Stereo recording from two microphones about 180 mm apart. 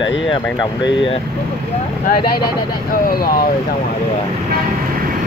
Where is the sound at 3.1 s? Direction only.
55° left (ahead or behind).